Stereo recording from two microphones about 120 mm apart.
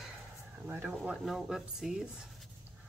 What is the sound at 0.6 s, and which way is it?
Speech, 15° right (ahead or behind).